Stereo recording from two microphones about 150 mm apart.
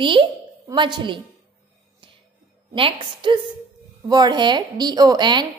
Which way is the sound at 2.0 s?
35° right (ahead or behind).